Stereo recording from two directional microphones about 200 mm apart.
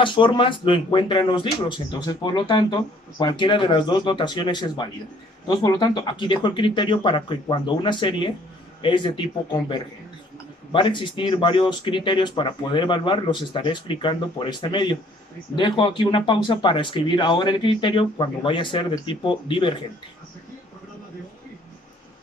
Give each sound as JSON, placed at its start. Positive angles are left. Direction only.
{"t": 0.0, "sound": "speech", "side_deg": 25}